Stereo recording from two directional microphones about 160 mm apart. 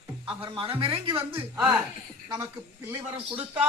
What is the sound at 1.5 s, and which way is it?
Speech, 10° right (ahead or behind).